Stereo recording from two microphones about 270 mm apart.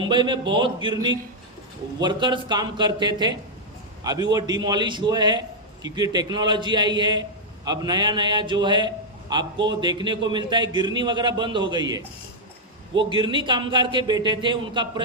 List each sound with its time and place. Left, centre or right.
0.0 s a man's voice: centre
13.1 s a man's voice: centre